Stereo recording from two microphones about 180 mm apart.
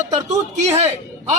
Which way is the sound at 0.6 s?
35° right (ahead or behind).